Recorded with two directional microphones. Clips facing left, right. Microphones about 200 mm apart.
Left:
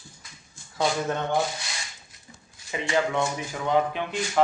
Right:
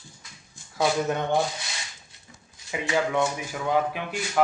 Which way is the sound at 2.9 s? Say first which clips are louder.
Right 1 dB; 5° right (ahead or behind).